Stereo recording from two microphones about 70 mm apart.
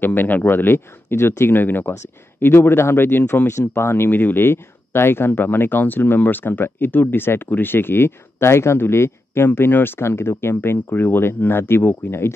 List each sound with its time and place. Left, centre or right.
0.0 s speech: left